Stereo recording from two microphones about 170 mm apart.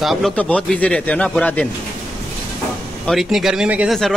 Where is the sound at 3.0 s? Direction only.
Centre (ahead or behind).